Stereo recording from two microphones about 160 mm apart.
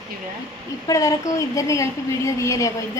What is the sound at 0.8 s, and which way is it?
A woman's voice, 20° left (ahead or behind).